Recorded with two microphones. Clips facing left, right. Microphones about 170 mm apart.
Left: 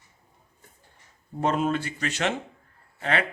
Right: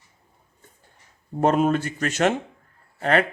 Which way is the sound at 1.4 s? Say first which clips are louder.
Right 5 dB; 50° right (ahead or behind).